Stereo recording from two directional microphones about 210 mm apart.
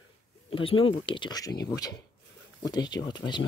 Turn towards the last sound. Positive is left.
turn(degrees=20)  # may be behind; listen again after turning